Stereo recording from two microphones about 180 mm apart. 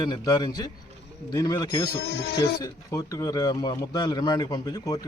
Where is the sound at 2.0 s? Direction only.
60° left (ahead or behind).